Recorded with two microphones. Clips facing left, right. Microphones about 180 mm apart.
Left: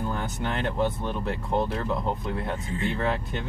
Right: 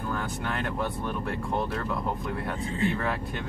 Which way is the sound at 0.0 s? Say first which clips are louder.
Left 2 dB; 25° left (ahead or behind).